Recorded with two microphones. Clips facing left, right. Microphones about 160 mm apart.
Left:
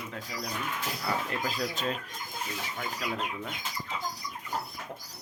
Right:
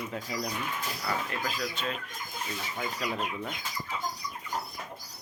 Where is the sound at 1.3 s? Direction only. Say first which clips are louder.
Left 1 dB; 35° left (ahead or behind).